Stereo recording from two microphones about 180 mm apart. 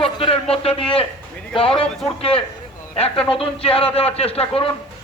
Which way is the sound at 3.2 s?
30° left (ahead or behind).